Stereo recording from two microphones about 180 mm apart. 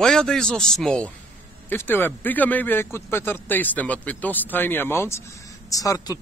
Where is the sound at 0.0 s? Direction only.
5° left (ahead or behind).